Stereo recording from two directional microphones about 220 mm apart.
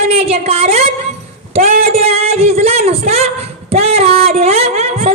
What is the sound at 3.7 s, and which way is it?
Female singing, 30° right (ahead or behind).